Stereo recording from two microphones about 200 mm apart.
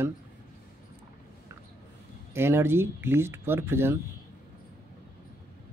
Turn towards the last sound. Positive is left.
turn(degrees=-10)  # may be behind; listen again after turning